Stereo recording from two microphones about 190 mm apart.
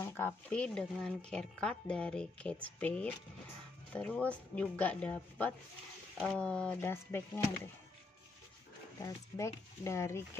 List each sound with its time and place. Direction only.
0.0 s speech: 10° left (ahead or behind)
9.0 s speech: 15° left (ahead or behind)